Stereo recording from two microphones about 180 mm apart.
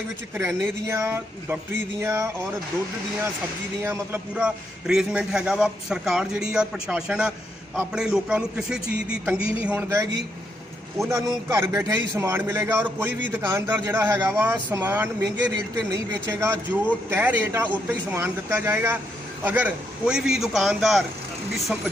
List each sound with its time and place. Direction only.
0.4 s a man's voice: 15° right (ahead or behind)
3.8 s a man's voice: 10° right (ahead or behind)